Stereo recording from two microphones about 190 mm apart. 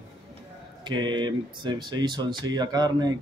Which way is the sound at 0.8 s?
25° right (ahead or behind).